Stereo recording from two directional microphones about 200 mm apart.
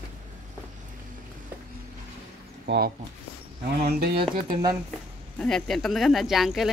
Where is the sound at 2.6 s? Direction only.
55° right (ahead or behind).